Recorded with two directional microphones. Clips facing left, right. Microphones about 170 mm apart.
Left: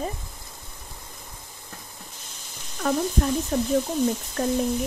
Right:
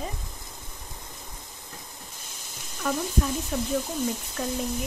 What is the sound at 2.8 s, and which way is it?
Speech, 40° left (ahead or behind).